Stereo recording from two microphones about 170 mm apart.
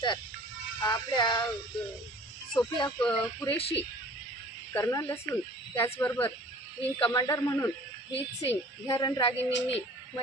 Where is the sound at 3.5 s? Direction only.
35° left (ahead or behind).